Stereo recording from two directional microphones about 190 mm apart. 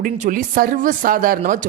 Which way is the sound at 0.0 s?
45° right (ahead or behind).